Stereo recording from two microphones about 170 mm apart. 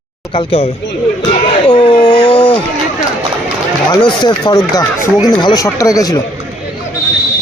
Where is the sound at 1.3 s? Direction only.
30° left (ahead or behind).